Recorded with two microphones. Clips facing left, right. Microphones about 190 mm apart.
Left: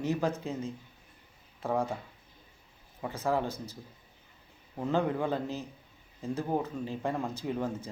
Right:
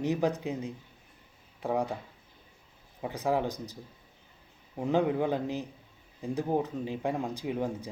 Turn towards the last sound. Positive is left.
turn(degrees=-10)  # may be behind; listen again after turning